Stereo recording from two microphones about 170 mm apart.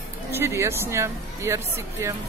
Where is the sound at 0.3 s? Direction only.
15° right (ahead or behind).